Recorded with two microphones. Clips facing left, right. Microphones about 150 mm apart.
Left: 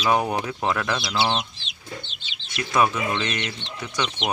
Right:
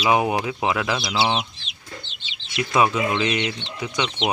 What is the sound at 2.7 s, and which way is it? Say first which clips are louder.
Speech: right 2 dB; 15° right (ahead or behind).